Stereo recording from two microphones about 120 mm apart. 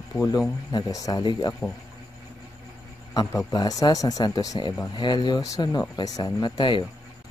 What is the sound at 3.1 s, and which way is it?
Speech, 35° left (ahead or behind).